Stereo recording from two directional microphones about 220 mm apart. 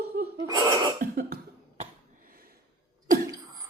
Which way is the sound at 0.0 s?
45° right (ahead or behind).